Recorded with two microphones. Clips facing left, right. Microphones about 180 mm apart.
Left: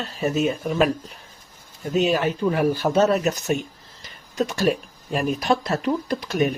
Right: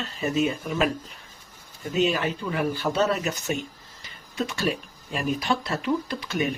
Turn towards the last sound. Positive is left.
turn(degrees=40)  # may be behind; listen again after turning